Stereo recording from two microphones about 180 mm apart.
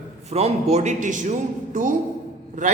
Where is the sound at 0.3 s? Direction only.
35° right (ahead or behind).